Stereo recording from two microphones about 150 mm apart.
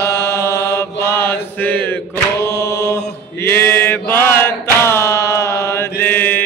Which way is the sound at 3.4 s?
15° left (ahead or behind).